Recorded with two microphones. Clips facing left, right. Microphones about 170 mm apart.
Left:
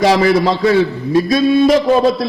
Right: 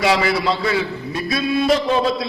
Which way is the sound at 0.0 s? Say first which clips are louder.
Left 6 dB; 40° left (ahead or behind).